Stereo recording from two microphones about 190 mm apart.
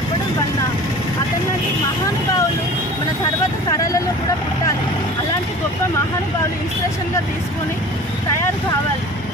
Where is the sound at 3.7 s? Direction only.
15° left (ahead or behind).